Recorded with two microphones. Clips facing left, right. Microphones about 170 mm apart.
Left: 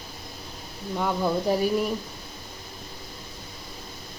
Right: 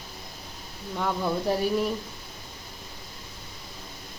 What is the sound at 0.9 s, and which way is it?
Speech, 5° left (ahead or behind).